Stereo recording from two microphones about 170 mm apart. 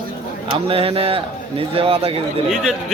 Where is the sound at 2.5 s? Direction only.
Centre (ahead or behind).